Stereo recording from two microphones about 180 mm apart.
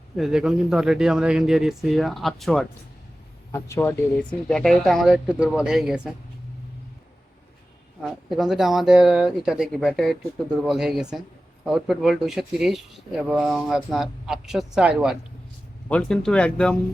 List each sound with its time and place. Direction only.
0.2 s speech: 5° right (ahead or behind)
3.5 s speech: 15° left (ahead or behind); by 6.0 s centre (ahead or behind)
8.0 s speech: centre (ahead or behind)